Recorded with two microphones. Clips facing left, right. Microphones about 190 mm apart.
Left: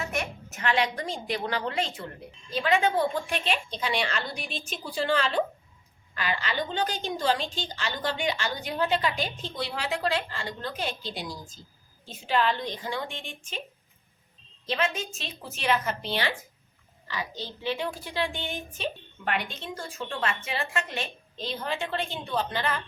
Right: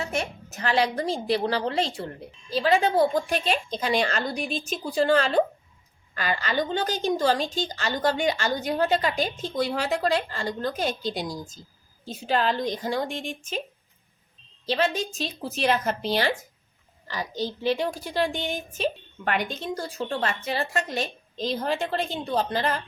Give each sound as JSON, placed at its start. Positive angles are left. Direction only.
{"t": 0.0, "sound": "a woman's voice", "side_deg": -30}
{"t": 14.7, "sound": "a woman's voice", "side_deg": -35}